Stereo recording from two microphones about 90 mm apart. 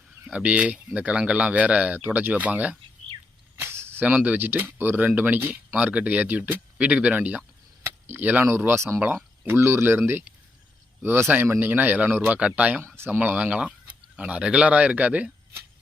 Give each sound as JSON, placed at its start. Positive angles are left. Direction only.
{"t": 0.3, "sound": "speech", "side_deg": -15}
{"t": 3.6, "sound": "a sound", "side_deg": -30}
{"t": 4.0, "sound": "speech", "side_deg": -15}
{"t": 7.9, "sound": "speech", "side_deg": -25}
{"t": 9.0, "sound": "a sound", "side_deg": -20}
{"t": 9.6, "sound": "speech", "side_deg": -30}
{"t": 11.0, "sound": "speech", "side_deg": -25}